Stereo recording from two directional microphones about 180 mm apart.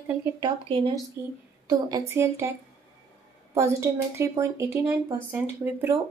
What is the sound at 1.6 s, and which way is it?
Speech, 20° right (ahead or behind).